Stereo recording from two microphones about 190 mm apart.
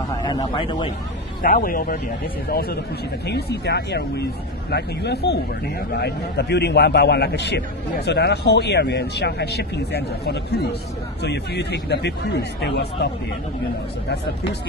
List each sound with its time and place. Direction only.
0.2 s a man's voice: 20° left (ahead or behind)
1.4 s speech: 50° left (ahead or behind)
3.3 s a man's voice: 60° left (ahead or behind)